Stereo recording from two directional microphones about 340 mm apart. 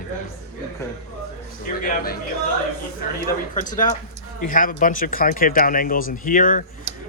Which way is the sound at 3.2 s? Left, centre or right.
Left.